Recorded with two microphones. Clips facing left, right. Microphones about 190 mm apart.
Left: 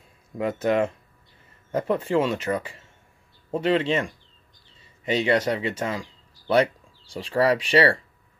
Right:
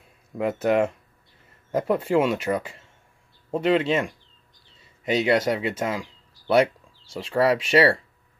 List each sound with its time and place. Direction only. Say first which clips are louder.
0.4 s speech: right 1 dB; 5° right (ahead or behind)